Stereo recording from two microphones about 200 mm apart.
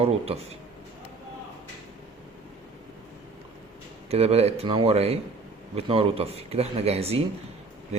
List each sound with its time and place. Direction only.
0.0 s speech: 30° right (ahead or behind)
4.1 s speech: 30° right (ahead or behind)